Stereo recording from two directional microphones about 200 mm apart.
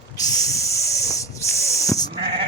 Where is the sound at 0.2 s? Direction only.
20° left (ahead or behind).